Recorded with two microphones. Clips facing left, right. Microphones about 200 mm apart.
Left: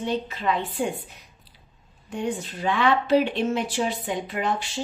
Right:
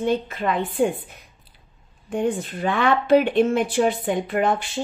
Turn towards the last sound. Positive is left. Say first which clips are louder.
# right 5 dB
turn(degrees=-55)  # may be behind; listen again after turning